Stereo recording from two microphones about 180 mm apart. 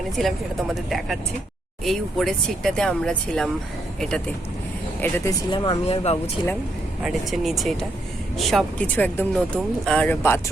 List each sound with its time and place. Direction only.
0.2 s speech: centre (ahead or behind)
4.9 s speech: 10° left (ahead or behind)
5.5 s speech: 25° left (ahead or behind)
7.0 s speech: centre (ahead or behind)